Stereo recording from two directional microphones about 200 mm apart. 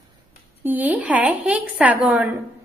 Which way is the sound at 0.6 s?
10° right (ahead or behind).